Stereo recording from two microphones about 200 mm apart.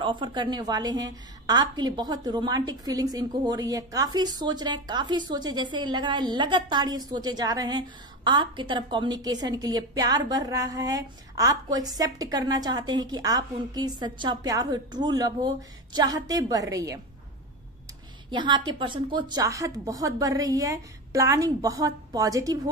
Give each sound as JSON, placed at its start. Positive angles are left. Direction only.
{"t": 0.0, "sound": "a woman's voice", "side_deg": -25}
{"t": 18.3, "sound": "a woman's voice", "side_deg": -25}